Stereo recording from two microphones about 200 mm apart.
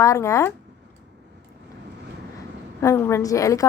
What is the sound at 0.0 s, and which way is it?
Speech, 15° left (ahead or behind).